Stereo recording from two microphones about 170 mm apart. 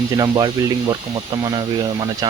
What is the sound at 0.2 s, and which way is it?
Speech, 25° right (ahead or behind).